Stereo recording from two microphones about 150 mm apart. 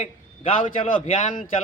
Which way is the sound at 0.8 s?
55° left (ahead or behind).